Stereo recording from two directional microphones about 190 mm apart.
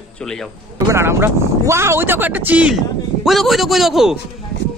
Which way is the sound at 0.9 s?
15° right (ahead or behind).